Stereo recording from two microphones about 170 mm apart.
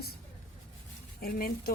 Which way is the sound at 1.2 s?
60° left (ahead or behind).